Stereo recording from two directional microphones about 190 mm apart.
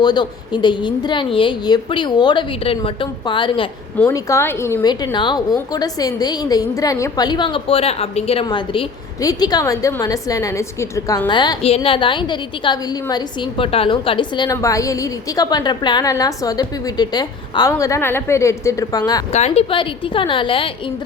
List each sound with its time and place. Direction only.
0.0 s a woman's voice: 25° left (ahead or behind)
4.1 s a woman's voice: 15° left (ahead or behind)
19.3 s a woman's voice: 35° left (ahead or behind)